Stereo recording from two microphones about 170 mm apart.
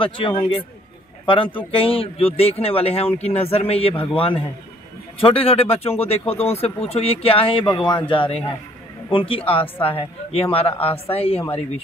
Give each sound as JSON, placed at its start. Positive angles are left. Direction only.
{"t": 0.0, "sound": "speech", "side_deg": 30}